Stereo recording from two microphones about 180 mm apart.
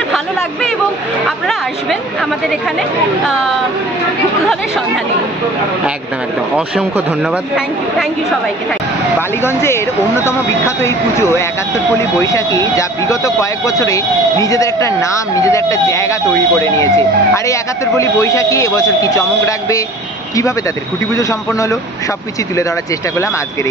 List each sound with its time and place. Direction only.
4.5 s speech: centre (ahead or behind)
6.5 s speech: 5° right (ahead or behind)
9.4 s speech: 15° left (ahead or behind)
10.8 s speech: 15° left (ahead or behind)
21.1 s speech: 15° left (ahead or behind)
23.1 s speech: 15° left (ahead or behind)